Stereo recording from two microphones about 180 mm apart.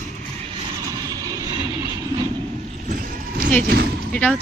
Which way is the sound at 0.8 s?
20° right (ahead or behind).